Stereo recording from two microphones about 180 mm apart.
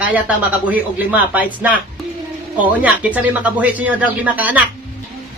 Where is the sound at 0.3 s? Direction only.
10° right (ahead or behind).